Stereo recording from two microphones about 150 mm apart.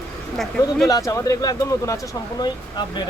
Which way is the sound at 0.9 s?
25° left (ahead or behind).